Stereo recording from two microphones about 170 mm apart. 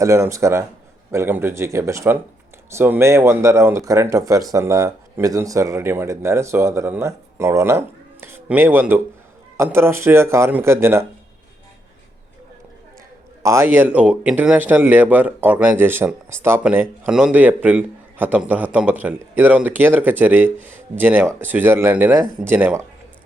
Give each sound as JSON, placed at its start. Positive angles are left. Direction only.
{"t": 0.0, "sound": "speech", "side_deg": -15}
{"t": 13.4, "sound": "speech", "side_deg": -15}